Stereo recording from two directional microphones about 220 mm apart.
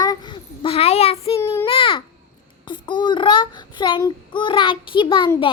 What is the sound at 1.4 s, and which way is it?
Speech, 10° left (ahead or behind).